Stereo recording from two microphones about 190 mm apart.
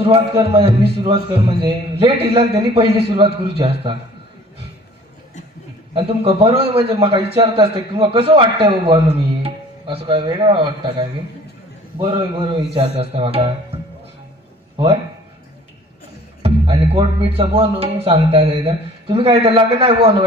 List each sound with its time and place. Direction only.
0.0 s a man's voice: 30° right (ahead or behind)
5.9 s a man's voice: 30° right (ahead or behind)
16.4 s a man's voice: 30° right (ahead or behind)